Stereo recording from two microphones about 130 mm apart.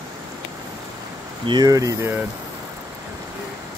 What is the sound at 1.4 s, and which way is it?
Speech, 35° right (ahead or behind).